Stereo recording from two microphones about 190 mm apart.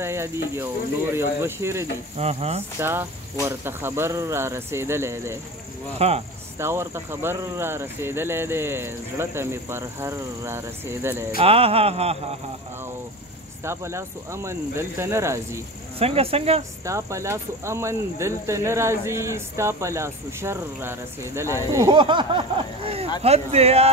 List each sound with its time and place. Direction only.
0.0 s speech: 15° right (ahead or behind)
2.1 s speech: 35° right (ahead or behind)
2.8 s speech: 10° right (ahead or behind)
5.9 s speech: 35° right (ahead or behind)
6.6 s speech: 10° right (ahead or behind)
11.3 s speech: 30° right (ahead or behind)
13.7 s speech: 15° right (ahead or behind)
16.0 s speech: 30° right (ahead or behind)
16.8 s speech: 15° right (ahead or behind)
22.0 s a sound: 25° right (ahead or behind)
23.2 s speech: 35° right (ahead or behind)